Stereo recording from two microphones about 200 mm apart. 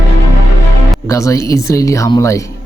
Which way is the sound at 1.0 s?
15° left (ahead or behind).